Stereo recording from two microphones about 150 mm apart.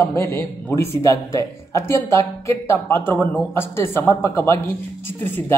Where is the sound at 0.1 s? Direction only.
15° left (ahead or behind).